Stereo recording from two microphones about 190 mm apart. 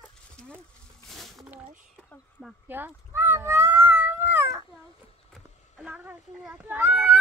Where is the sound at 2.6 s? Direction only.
10° right (ahead or behind).